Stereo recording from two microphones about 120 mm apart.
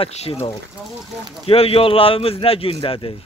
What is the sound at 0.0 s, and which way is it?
Speech, 55° left (ahead or behind).